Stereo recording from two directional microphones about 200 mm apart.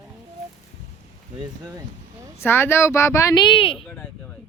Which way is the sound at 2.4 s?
10° left (ahead or behind).